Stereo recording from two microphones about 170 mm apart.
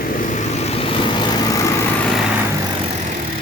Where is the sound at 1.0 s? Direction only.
25° left (ahead or behind).